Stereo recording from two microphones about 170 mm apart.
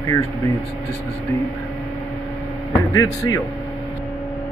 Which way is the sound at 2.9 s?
20° left (ahead or behind).